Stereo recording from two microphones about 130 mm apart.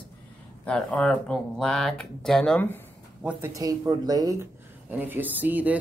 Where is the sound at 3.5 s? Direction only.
30° right (ahead or behind).